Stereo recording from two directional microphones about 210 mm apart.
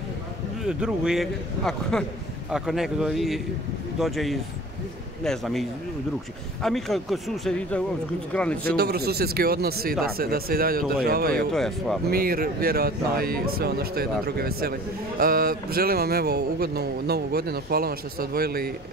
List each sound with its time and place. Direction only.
0.7 s a man's voice: 5° right (ahead or behind)
8.6 s speech: 45° right (ahead or behind)
11.3 s a man's voice: centre (ahead or behind)
12.1 s speech: 45° right (ahead or behind)